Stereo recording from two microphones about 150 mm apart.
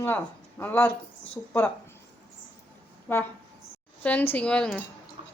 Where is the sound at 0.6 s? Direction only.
10° left (ahead or behind).